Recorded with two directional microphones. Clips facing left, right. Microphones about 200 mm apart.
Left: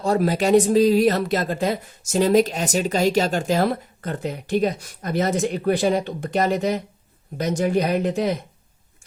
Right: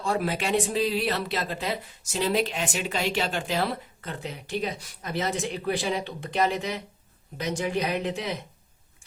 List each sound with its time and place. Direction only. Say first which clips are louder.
0.0 s speech: left 7 dB; 40° left (ahead or behind)